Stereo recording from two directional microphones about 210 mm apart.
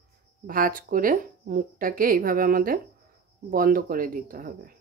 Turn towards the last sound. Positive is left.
turn(degrees=-40)  # may be behind; listen again after turning